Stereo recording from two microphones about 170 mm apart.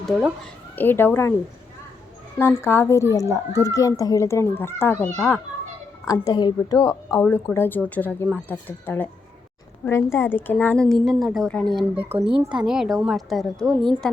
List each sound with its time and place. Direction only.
0.0 s speech: 5° right (ahead or behind)
0.8 s speech: 10° left (ahead or behind)
2.4 s speech: 15° left (ahead or behind)
6.1 s a woman's voice: 20° left (ahead or behind); by 11.9 s centre (ahead or behind)
12.1 s a child's voice: 35° right (ahead or behind)
12.5 s a woman's voice: 5° right (ahead or behind)